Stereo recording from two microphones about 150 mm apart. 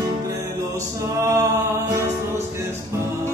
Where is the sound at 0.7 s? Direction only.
20° right (ahead or behind).